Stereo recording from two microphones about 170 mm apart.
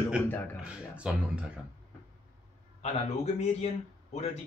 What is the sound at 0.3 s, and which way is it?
Speech, 10° left (ahead or behind).